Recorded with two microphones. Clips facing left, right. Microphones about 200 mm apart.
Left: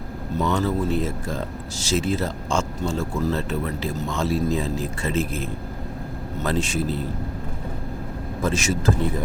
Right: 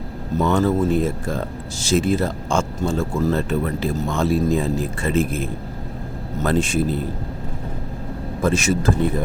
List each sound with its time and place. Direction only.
0.4 s speech: 50° right (ahead or behind)
8.4 s speech: 55° right (ahead or behind)